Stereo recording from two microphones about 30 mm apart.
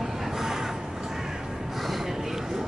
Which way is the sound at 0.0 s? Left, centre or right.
Centre.